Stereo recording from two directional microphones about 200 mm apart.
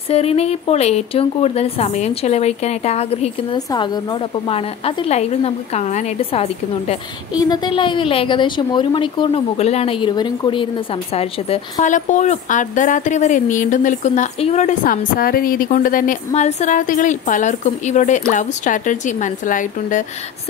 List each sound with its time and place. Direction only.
0.1 s speech: 30° left (ahead or behind)
3.5 s a woman's voice: 20° left (ahead or behind)
7.3 s speech: 20° left (ahead or behind); by 20.1 s 40° left (ahead or behind)